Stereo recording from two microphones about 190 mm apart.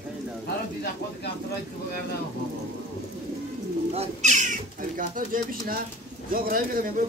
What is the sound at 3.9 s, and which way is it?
Speech, 40° right (ahead or behind).